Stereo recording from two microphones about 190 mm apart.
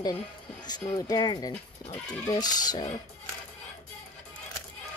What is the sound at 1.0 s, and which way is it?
Speech, 20° left (ahead or behind).